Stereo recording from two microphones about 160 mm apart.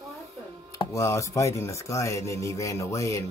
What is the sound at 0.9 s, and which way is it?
Speech, 20° left (ahead or behind).